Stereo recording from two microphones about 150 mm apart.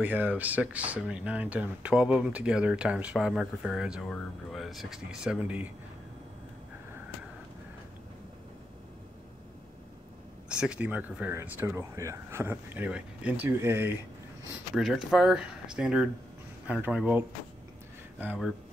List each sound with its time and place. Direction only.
0.0 s speech: 10° right (ahead or behind)
10.5 s speech: 5° right (ahead or behind)
14.8 s speech: centre (ahead or behind)